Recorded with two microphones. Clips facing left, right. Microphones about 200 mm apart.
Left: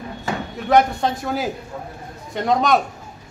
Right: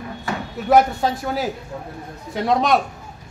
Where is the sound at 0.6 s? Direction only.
5° right (ahead or behind).